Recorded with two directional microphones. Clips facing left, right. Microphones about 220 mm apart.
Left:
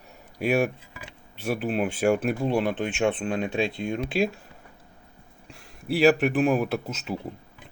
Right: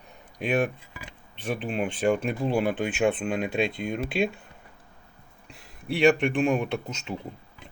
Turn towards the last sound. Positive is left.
turn(degrees=5)  # may be behind; listen again after turning